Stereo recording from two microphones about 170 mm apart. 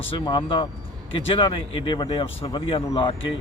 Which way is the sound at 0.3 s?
30° left (ahead or behind).